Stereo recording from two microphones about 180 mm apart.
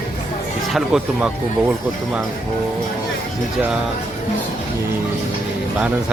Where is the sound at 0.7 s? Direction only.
5° right (ahead or behind).